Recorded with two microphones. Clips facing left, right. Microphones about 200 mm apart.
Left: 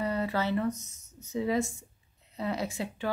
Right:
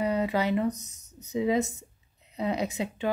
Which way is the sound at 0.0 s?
15° right (ahead or behind).